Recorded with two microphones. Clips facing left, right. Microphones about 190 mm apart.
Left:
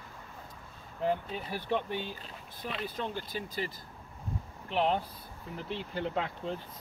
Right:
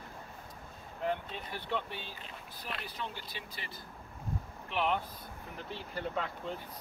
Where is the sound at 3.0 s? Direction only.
45° left (ahead or behind).